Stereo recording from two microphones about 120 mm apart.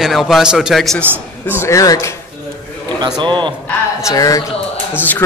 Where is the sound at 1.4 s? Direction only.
20° left (ahead or behind).